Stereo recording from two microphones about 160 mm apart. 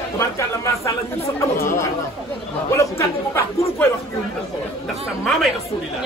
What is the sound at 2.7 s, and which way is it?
Speech, 15° left (ahead or behind).